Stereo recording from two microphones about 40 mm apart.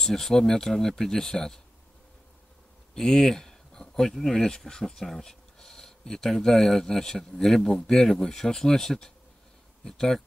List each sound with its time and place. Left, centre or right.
0.0 s speech: centre
2.9 s speech: centre